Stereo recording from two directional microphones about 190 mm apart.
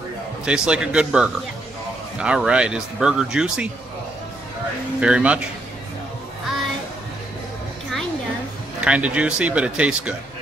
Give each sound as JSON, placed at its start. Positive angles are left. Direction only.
{"t": 0.5, "sound": "speech", "side_deg": -5}
{"t": 5.0, "sound": "speech", "side_deg": -5}
{"t": 8.8, "sound": "speech", "side_deg": -5}